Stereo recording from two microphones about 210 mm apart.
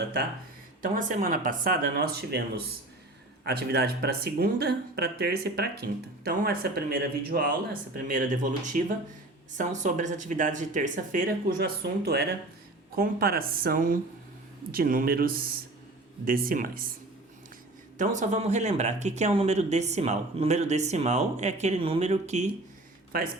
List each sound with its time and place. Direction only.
0.8 s speech: 40° right (ahead or behind)
17.9 s speech: 35° right (ahead or behind)
23.1 s speech: 45° right (ahead or behind)